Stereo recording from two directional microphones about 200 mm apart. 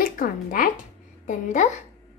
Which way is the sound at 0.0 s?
45° left (ahead or behind).